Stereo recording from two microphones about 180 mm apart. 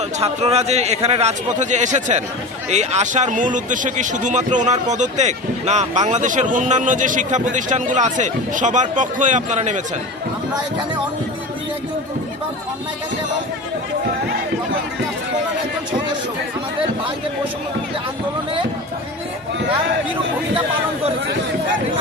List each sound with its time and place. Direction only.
0.2 s a man's voice: 35° right (ahead or behind)